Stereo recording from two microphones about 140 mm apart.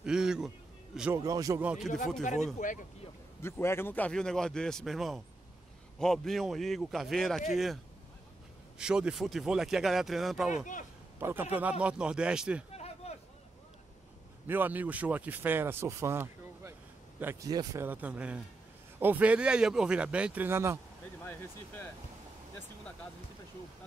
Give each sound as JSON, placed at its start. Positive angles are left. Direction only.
{"t": 0.0, "sound": "a sound", "side_deg": -5}
{"t": 1.1, "sound": "speech", "side_deg": -25}
{"t": 1.6, "sound": "speech", "side_deg": -10}
{"t": 2.5, "sound": "speech", "side_deg": 65}
{"t": 3.4, "sound": "speech", "side_deg": 15}
{"t": 11.1, "sound": "a man's voice", "side_deg": -15}
{"t": 12.7, "sound": "a sound", "side_deg": 50}
{"t": 14.5, "sound": "a man's voice", "side_deg": -15}
{"t": 17.5, "sound": "speech", "side_deg": -25}
{"t": 17.8, "sound": "speech", "side_deg": -10}